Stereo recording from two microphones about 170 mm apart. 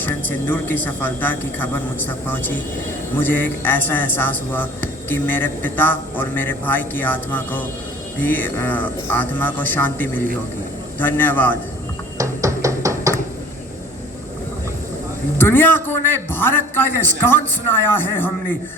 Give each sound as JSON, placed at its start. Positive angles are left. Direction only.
{"t": 0.0, "sound": "a man's voice", "side_deg": 10}
{"t": 12.1, "sound": "music", "side_deg": -20}
{"t": 15.4, "sound": "a man's voice", "side_deg": 10}